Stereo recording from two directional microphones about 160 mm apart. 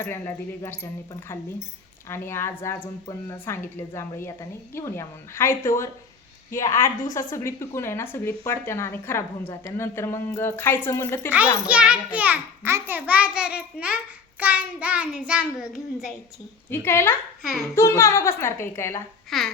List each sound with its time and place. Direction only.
0.0 s a woman's voice: 15° left (ahead or behind)
2.0 s a woman's voice: 15° left (ahead or behind)
11.7 s a child's voice: 5° right (ahead or behind)
16.6 s a woman's voice: 15° left (ahead or behind)
19.3 s a child's voice: centre (ahead or behind)